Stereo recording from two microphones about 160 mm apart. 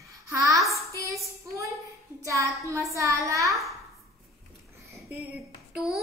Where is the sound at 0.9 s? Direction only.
20° right (ahead or behind).